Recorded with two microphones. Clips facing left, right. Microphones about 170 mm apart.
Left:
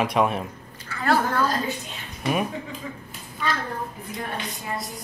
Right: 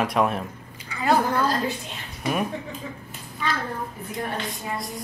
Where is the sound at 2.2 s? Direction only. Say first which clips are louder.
Left 1 dB; centre (ahead or behind).